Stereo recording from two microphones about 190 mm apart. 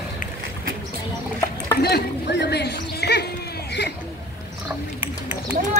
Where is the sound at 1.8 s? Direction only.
60° left (ahead or behind).